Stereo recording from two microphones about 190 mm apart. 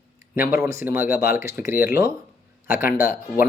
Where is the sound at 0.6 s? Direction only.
15° right (ahead or behind).